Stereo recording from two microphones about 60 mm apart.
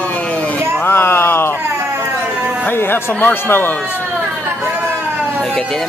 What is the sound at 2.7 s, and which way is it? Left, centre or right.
Speech, left.